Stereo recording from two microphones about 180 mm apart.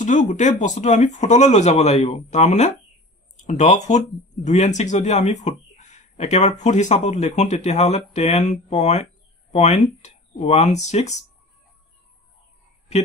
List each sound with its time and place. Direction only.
0.0 s speech: 45° left (ahead or behind)